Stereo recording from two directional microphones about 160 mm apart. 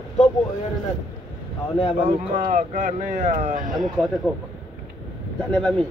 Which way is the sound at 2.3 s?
55° right (ahead or behind).